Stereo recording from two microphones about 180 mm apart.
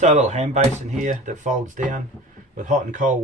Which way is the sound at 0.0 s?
40° right (ahead or behind).